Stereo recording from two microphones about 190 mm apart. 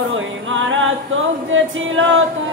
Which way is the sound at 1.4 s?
90° right.